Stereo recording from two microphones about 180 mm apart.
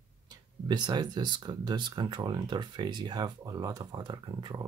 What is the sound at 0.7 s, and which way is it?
Speech, 25° right (ahead or behind).